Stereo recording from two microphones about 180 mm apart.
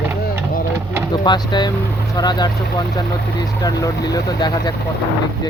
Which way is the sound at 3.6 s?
20° left (ahead or behind).